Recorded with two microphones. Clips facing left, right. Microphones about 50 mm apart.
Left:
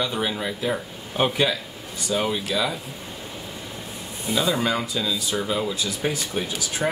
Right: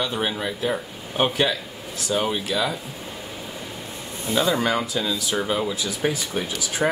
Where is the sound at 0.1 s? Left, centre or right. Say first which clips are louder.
Right 1 dB; centre.